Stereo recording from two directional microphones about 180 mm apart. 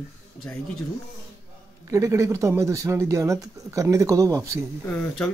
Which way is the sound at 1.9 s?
15° right (ahead or behind).